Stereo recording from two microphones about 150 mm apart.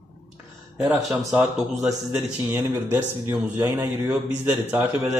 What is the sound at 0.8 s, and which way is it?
A man's voice, 5° right (ahead or behind).